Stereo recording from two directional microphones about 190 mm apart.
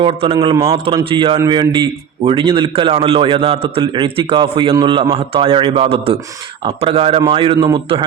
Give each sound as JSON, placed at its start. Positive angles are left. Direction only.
{"t": 0.0, "sound": "a man's voice", "side_deg": -30}
{"t": 0.5, "sound": "a man's voice", "side_deg": -15}